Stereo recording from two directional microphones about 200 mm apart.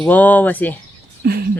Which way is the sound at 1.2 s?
50° right (ahead or behind).